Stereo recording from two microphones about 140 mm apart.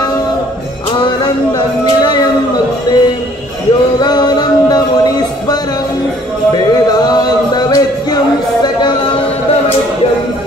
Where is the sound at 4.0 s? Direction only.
30° left (ahead or behind).